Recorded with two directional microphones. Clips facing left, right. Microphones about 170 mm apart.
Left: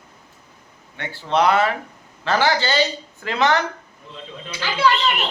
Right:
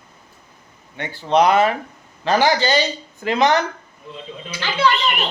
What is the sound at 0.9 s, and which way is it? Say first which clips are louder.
A man's voice: right 4 dB; 15° right (ahead or behind).